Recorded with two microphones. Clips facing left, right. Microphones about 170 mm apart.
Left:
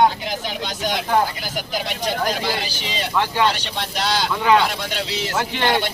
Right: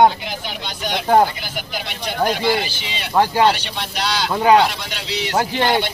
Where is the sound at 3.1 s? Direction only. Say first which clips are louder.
Right 5 dB; 40° right (ahead or behind).